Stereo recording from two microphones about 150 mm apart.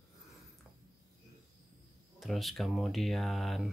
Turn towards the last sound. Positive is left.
turn(degrees=0)  # may be behind; listen again after turning